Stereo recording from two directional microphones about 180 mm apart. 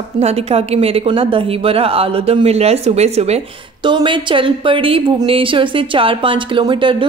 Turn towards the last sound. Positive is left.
turn(degrees=-25)  # may be behind; listen again after turning